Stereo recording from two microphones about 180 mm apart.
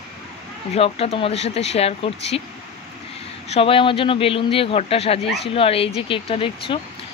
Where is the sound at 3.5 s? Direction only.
30° left (ahead or behind).